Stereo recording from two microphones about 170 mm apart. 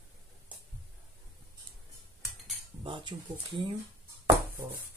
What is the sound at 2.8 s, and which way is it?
Speech, 25° right (ahead or behind).